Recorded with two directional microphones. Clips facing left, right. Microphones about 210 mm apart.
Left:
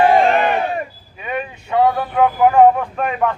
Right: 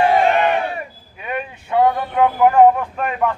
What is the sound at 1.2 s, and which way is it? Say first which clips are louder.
Speech: left 2 dB; 5° right (ahead or behind).